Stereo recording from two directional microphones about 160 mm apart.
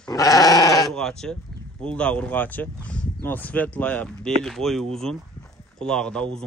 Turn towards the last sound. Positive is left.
turn(degrees=5)  # may be behind; listen again after turning